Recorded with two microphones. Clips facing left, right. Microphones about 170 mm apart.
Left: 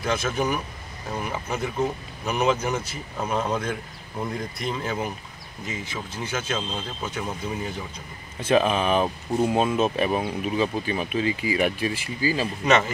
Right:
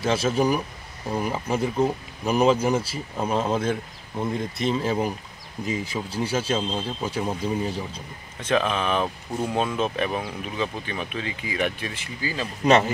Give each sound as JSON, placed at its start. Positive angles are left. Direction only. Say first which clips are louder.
{"t": 0.0, "sound": "speech", "louder": "right 3 dB", "side_deg": -30}
{"t": 8.4, "sound": "speech", "louder": "left 3 dB", "side_deg": 10}